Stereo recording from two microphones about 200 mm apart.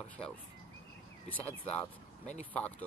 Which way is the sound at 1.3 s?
10° left (ahead or behind).